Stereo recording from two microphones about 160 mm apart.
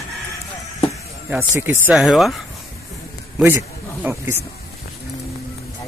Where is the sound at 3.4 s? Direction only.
15° right (ahead or behind).